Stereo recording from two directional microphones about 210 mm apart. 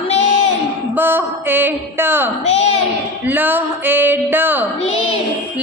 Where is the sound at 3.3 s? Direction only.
10° right (ahead or behind).